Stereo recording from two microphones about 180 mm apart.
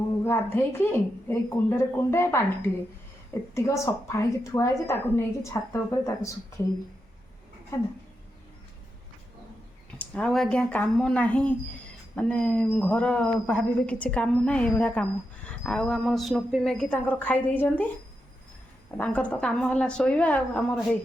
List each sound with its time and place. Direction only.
0.3 s speech: 10° left (ahead or behind)
10.0 s speech: 5° left (ahead or behind)
18.9 s speech: 5° left (ahead or behind)